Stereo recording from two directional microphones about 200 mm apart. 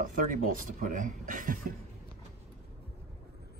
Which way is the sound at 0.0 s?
45° right (ahead or behind).